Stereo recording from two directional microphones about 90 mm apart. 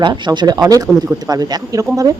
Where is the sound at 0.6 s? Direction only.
40° right (ahead or behind).